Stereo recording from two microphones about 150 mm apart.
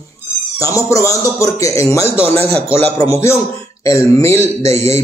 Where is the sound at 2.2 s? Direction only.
40° right (ahead or behind).